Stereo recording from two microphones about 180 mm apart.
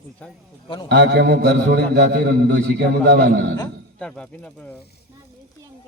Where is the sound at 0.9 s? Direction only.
70° right (ahead or behind).